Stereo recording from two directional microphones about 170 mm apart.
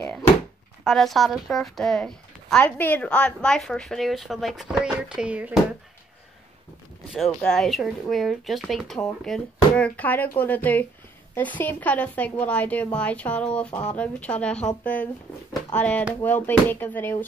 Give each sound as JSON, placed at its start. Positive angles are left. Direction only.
{"t": 0.8, "sound": "speech", "side_deg": 0}
{"t": 7.1, "sound": "a woman's voice", "side_deg": 0}